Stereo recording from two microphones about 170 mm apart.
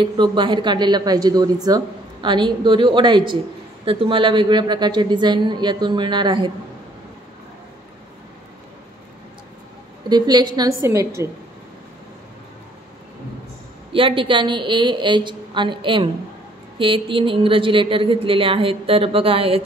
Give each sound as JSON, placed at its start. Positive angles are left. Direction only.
{"t": 0.0, "sound": "a woman's voice", "side_deg": -25}
{"t": 10.0, "sound": "a woman's voice", "side_deg": -25}
{"t": 13.9, "sound": "a woman's voice", "side_deg": -30}